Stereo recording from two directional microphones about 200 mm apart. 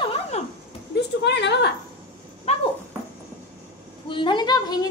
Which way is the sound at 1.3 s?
60° left (ahead or behind).